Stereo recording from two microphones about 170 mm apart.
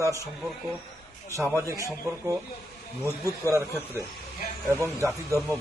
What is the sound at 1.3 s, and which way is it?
Speech, 15° right (ahead or behind).